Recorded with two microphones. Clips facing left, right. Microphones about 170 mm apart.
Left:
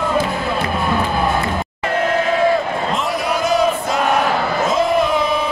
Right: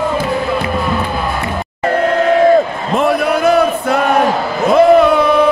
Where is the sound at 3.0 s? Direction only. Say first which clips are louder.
Right 7 dB; 60° right (ahead or behind).